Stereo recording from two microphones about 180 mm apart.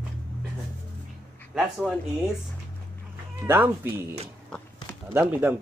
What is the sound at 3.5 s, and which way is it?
Speech, 10° right (ahead or behind).